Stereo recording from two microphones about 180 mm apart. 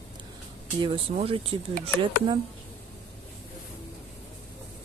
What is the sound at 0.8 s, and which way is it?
Speech, 30° right (ahead or behind).